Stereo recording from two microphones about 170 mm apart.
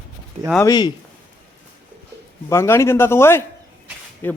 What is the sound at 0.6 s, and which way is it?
Speech, 25° left (ahead or behind).